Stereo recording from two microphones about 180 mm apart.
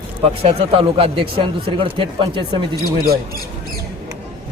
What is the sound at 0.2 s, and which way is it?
Speech, 30° right (ahead or behind).